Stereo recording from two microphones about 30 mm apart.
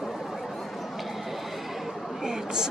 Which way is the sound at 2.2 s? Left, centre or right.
Right.